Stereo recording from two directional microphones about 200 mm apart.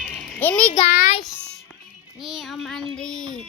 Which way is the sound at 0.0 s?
5° left (ahead or behind).